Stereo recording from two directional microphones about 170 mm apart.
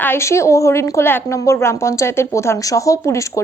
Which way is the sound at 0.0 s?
15° left (ahead or behind).